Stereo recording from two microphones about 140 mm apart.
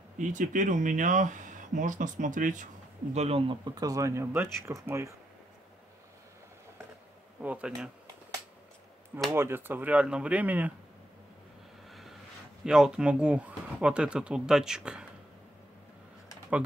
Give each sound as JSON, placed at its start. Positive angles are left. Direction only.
{"t": 0.2, "sound": "speech", "side_deg": -65}
{"t": 7.4, "sound": "speech", "side_deg": -10}
{"t": 9.3, "sound": "speech", "side_deg": -15}
{"t": 11.9, "sound": "vehicle", "side_deg": 0}
{"t": 12.6, "sound": "speech", "side_deg": -5}